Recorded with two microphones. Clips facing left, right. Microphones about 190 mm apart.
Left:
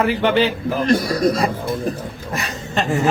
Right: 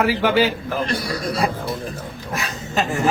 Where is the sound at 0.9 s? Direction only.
45° left (ahead or behind).